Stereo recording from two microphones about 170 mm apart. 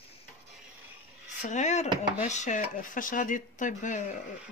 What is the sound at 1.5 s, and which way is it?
Speech, 45° left (ahead or behind).